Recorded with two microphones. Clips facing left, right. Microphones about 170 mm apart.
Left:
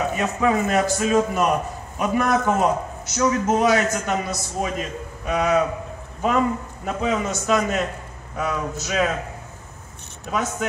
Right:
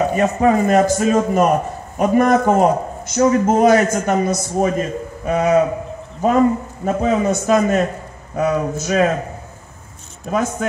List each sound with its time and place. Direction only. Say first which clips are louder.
0.1 s a man's voice: right 6 dB; 45° right (ahead or behind)